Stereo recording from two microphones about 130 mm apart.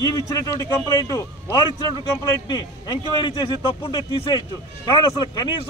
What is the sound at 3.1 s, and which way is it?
Speech, 40° left (ahead or behind).